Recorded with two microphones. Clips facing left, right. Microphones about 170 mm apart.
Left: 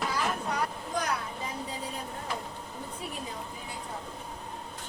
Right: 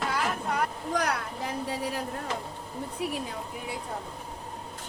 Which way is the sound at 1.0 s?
70° right (ahead or behind).